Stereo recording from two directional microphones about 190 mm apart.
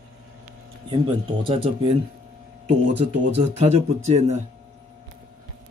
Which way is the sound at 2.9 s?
35° right (ahead or behind).